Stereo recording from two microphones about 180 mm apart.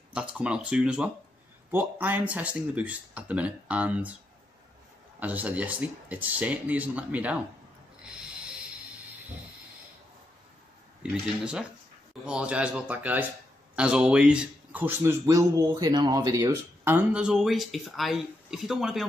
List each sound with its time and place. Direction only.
0.1 s a man's voice: 5° right (ahead or behind)
5.2 s speech: 10° right (ahead or behind)
11.0 s a man's voice: 5° right (ahead or behind)